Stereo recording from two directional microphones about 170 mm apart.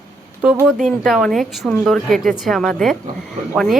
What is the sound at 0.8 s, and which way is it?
A woman's voice, centre (ahead or behind).